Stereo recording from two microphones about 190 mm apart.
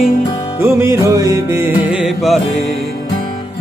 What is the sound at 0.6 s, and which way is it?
Music, 15° right (ahead or behind).